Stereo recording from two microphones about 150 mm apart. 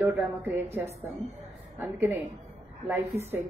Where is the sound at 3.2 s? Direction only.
45° right (ahead or behind).